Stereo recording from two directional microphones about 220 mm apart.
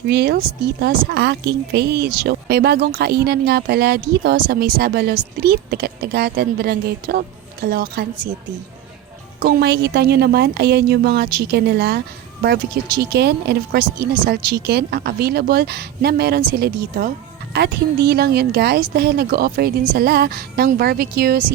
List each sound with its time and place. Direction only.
0.1 s a woman's voice: 45° right (ahead or behind)
9.4 s a woman's voice: 50° right (ahead or behind)